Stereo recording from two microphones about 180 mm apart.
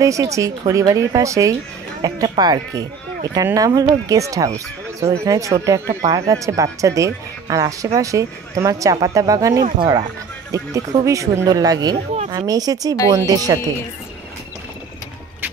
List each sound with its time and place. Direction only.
0.0 s speech: 20° right (ahead or behind)